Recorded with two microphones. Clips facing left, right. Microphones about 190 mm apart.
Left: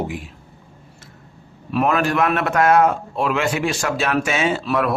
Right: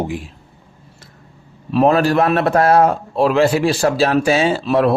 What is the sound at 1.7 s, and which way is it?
Speech, 30° right (ahead or behind).